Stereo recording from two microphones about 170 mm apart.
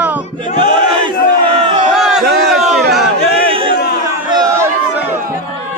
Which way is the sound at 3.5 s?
30° right (ahead or behind).